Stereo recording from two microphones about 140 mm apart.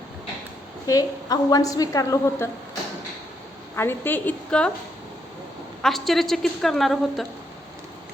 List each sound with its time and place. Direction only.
0.9 s a woman's voice: 25° left (ahead or behind)
3.8 s a woman's voice: 15° left (ahead or behind)
5.8 s a woman's voice: centre (ahead or behind)